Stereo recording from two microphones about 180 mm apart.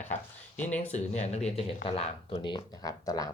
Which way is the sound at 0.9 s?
40° left (ahead or behind).